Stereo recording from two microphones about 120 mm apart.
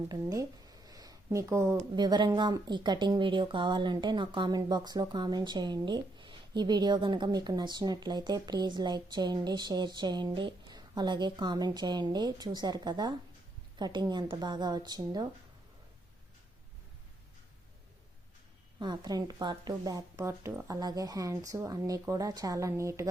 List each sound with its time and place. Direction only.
0.1 s a sound: 30° right (ahead or behind)
2.0 s speech: 40° right (ahead or behind)
18.8 s speech: 35° right (ahead or behind)
20.1 s speech: 20° right (ahead or behind)